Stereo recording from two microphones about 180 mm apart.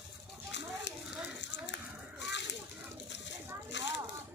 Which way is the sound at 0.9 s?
70° left (ahead or behind).